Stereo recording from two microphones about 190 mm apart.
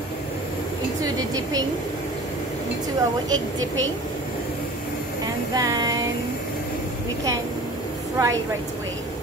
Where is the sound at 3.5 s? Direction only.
90° right.